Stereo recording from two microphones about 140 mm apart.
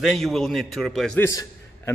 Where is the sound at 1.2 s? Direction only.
20° left (ahead or behind).